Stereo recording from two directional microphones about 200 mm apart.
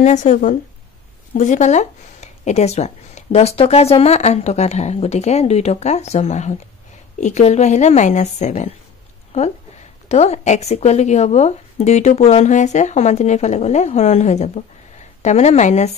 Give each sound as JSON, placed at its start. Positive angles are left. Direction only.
{"t": 0.0, "sound": "speech", "side_deg": 35}